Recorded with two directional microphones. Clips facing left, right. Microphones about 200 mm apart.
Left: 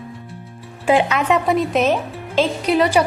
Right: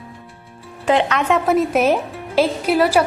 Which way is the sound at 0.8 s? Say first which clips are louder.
Left 1 dB; 5° left (ahead or behind).